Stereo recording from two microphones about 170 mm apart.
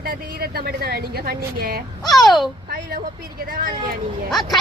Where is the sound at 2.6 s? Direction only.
60° right (ahead or behind).